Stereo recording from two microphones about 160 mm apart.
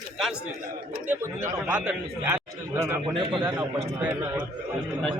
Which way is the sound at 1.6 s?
10° right (ahead or behind).